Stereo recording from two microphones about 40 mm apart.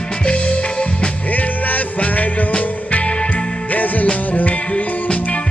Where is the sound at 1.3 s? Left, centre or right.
Left.